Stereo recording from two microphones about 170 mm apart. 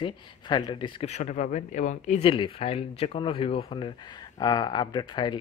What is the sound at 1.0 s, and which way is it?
Speech, 40° left (ahead or behind).